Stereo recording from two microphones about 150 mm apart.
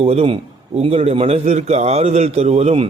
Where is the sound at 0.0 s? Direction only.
40° right (ahead or behind).